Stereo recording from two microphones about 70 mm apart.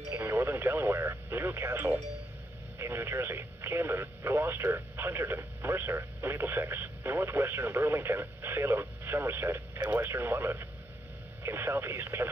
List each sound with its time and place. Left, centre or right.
0.1 s radio: right
2.8 s speech: right